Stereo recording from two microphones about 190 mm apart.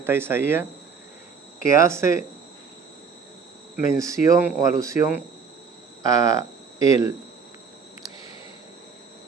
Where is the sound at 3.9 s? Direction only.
15° right (ahead or behind).